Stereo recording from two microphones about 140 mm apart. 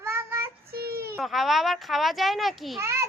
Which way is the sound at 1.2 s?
Centre (ahead or behind).